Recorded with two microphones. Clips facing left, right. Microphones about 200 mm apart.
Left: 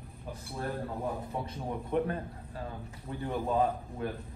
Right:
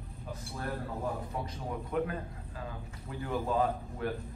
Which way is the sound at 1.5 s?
30° left (ahead or behind).